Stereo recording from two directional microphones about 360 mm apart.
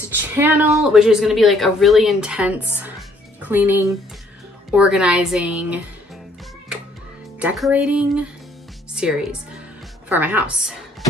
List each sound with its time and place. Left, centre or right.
0.1 s speech: centre
7.3 s speech: centre